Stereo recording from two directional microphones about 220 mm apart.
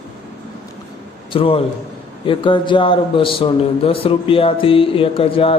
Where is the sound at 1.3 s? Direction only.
25° left (ahead or behind).